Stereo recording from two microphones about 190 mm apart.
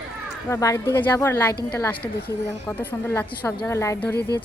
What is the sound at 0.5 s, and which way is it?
A woman's voice, 15° left (ahead or behind).